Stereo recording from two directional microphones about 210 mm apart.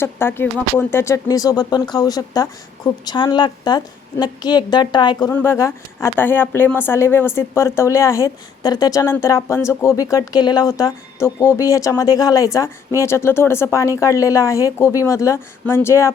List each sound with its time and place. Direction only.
0.0 s a woman's voice: 10° left (ahead or behind)